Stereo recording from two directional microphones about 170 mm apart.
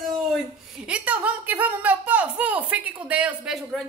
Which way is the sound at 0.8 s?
5° right (ahead or behind).